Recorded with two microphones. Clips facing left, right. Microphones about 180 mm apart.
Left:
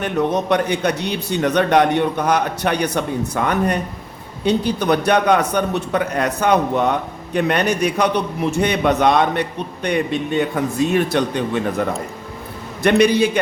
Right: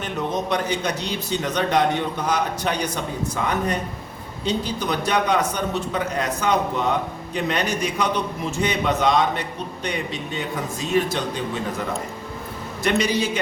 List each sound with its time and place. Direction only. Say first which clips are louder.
0.0 s a man's voice: left 6 dB; 60° left (ahead or behind)
12.8 s a man's voice: left 7 dB; 60° left (ahead or behind)